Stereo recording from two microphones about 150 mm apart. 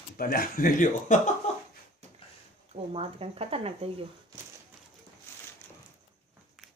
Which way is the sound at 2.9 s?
40° right (ahead or behind).